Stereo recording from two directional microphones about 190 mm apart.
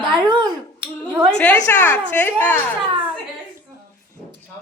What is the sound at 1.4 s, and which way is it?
A woman's voice, 5° left (ahead or behind).